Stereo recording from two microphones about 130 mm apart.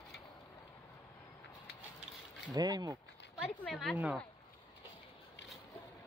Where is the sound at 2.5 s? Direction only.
30° right (ahead or behind).